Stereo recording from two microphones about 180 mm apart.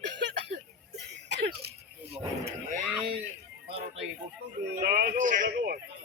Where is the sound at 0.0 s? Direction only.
75° right (ahead or behind).